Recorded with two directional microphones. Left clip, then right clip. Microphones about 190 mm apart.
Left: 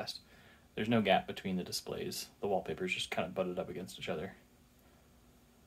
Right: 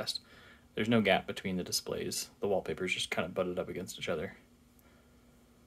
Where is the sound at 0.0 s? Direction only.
35° right (ahead or behind).